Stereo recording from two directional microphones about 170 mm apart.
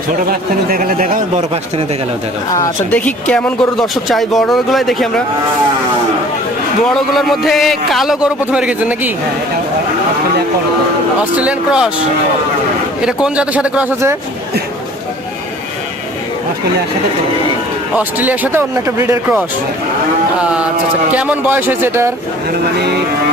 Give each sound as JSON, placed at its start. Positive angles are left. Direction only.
{"t": 0.3, "sound": "speech", "side_deg": -55}
{"t": 2.9, "sound": "a man's voice", "side_deg": 5}
{"t": 6.8, "sound": "a man's voice", "side_deg": 0}
{"t": 11.3, "sound": "a man's voice", "side_deg": -5}
{"t": 13.0, "sound": "speech", "side_deg": -5}
{"t": 17.9, "sound": "speech", "side_deg": -10}